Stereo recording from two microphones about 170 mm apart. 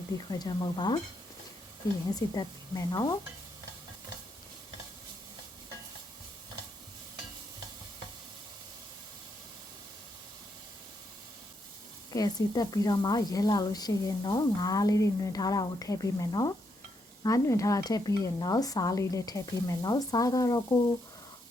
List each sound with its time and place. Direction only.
0.3 s a woman's voice: 25° left (ahead or behind)
2.1 s a woman's voice: 20° left (ahead or behind)
12.1 s a woman's voice: 20° left (ahead or behind)